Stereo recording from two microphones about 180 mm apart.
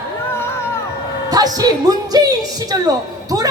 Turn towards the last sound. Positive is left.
turn(degrees=-20)  # may be behind; listen again after turning